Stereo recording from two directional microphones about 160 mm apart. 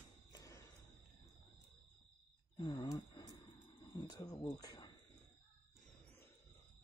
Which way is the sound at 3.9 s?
25° left (ahead or behind).